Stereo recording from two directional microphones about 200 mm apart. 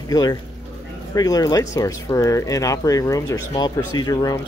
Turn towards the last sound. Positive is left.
turn(degrees=20)  # may be behind; listen again after turning